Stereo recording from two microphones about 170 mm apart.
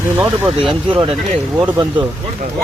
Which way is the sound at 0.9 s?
30° right (ahead or behind).